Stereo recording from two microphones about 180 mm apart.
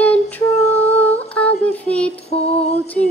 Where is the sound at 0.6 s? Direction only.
35° left (ahead or behind).